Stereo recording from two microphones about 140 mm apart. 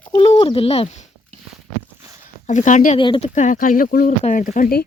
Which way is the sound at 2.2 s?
60° left (ahead or behind).